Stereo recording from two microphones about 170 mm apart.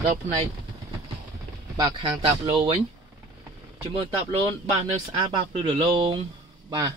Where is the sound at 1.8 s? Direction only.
25° right (ahead or behind).